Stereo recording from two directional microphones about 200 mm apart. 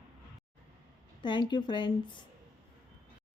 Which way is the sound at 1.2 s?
20° left (ahead or behind).